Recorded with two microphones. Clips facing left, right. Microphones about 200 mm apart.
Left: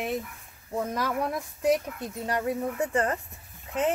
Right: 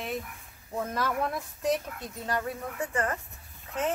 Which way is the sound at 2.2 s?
20° left (ahead or behind).